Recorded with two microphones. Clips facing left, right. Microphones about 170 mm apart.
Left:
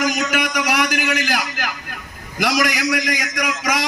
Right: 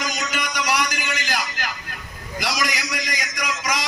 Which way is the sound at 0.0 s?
60° left (ahead or behind).